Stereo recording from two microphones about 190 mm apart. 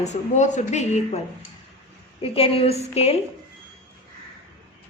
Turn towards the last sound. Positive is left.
turn(degrees=35)  # may be behind; listen again after turning